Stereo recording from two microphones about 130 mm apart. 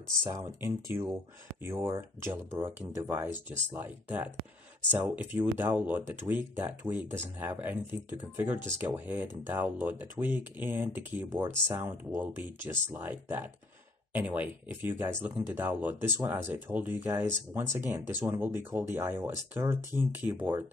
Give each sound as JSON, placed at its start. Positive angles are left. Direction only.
{"t": 0.6, "sound": "speech", "side_deg": -20}